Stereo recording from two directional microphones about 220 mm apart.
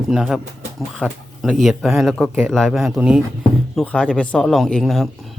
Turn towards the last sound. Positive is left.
turn(degrees=0)  # may be behind; listen again after turning